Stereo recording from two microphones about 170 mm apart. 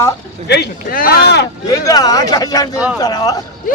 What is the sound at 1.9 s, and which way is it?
A man's voice, 20° left (ahead or behind).